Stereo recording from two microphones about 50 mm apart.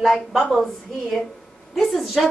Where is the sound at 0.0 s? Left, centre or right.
Centre.